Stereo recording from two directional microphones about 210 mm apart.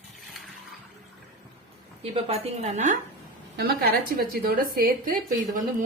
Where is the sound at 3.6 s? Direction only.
50° right (ahead or behind).